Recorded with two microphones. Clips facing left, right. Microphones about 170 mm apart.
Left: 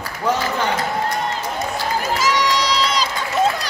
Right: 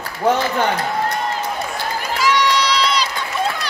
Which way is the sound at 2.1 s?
40° left (ahead or behind).